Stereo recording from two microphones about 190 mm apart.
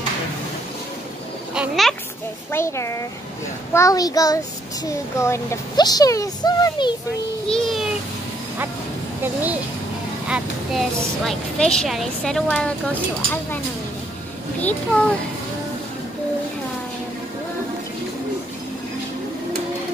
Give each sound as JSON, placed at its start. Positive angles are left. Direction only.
{"t": 1.5, "sound": "speech", "side_deg": 0}
{"t": 2.5, "sound": "a child's voice", "side_deg": 15}
{"t": 7.4, "sound": "a child's voice", "side_deg": 0}
{"t": 9.2, "sound": "a woman's voice", "side_deg": -10}
{"t": 14.6, "sound": "a child's voice", "side_deg": 5}